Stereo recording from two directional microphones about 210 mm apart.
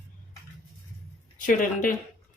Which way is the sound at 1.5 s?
40° left (ahead or behind).